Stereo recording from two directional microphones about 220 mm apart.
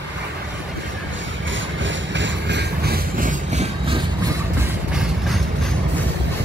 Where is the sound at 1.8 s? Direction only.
55° right (ahead or behind); by 4.0 s 25° right (ahead or behind).